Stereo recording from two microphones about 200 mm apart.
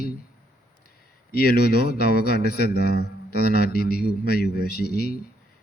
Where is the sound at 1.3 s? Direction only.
50° left (ahead or behind).